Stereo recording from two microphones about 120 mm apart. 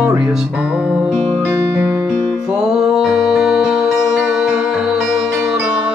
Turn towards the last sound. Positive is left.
turn(degrees=-5)  # may be behind; listen again after turning